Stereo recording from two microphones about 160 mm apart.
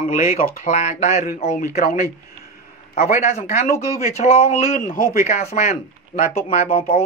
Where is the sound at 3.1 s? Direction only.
45° left (ahead or behind).